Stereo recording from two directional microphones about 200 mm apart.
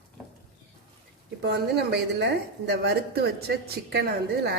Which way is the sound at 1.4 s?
60° right (ahead or behind).